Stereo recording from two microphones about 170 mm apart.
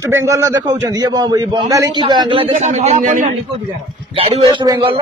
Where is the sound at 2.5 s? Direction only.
40° right (ahead or behind).